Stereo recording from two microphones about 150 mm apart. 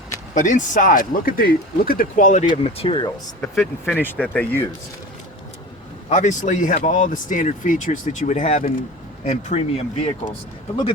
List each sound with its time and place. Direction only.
0.3 s speech: 55° left (ahead or behind)
2.5 s speech: 40° left (ahead or behind)
3.4 s speech: centre (ahead or behind)
6.1 s speech: 50° left (ahead or behind)